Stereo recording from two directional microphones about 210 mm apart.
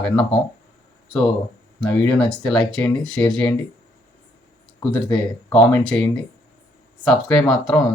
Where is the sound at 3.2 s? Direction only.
20° left (ahead or behind).